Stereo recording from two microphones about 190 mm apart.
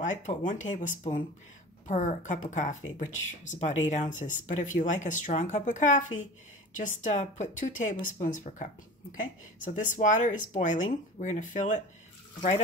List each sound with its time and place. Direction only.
0.3 s speech: 40° left (ahead or behind)
9.8 s speech: 40° left (ahead or behind)